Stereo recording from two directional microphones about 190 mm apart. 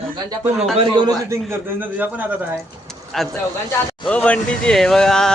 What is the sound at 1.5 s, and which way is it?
A man's voice, 10° right (ahead or behind).